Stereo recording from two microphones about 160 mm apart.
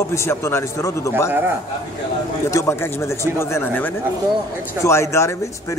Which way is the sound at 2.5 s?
20° left (ahead or behind).